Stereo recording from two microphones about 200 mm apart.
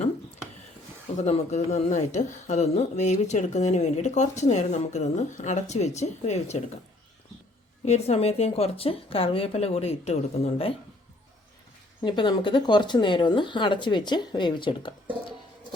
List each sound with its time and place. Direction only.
1.1 s speech: 35° left (ahead or behind)
7.9 s speech: 30° left (ahead or behind)
12.0 s speech: 25° left (ahead or behind)